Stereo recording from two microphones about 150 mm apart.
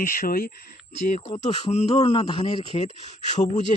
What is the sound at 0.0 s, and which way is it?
Speech, 70° left (ahead or behind).